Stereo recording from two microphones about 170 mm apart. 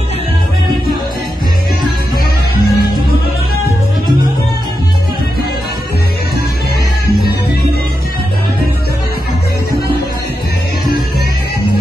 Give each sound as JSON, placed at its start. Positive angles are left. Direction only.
{"t": 2.5, "sound": "music", "side_deg": 65}